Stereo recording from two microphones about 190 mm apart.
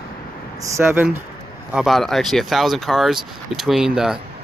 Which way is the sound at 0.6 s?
15° right (ahead or behind).